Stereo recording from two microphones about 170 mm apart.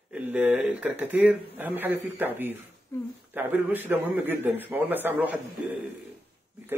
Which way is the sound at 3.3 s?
10° right (ahead or behind).